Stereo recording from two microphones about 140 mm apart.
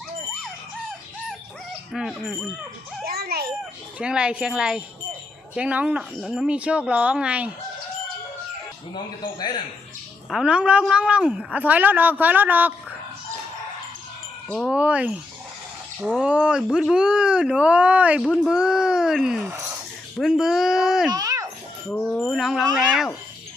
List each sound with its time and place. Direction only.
1.9 s speech: centre (ahead or behind)
3.0 s children playing: 90° right
3.9 s a woman's voice: 5° right (ahead or behind)
10.2 s a woman's voice: 5° right (ahead or behind)
14.7 s a woman's voice: 10° right (ahead or behind)
21.1 s a sound: 25° right (ahead or behind)
21.8 s speech: 10° left (ahead or behind)